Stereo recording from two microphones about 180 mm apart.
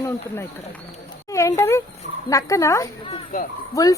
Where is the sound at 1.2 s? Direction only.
15° left (ahead or behind).